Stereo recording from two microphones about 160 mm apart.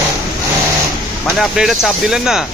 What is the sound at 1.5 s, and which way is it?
Speech, 5° right (ahead or behind).